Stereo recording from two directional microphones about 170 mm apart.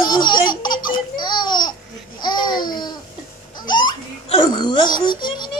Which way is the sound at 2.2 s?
25° left (ahead or behind).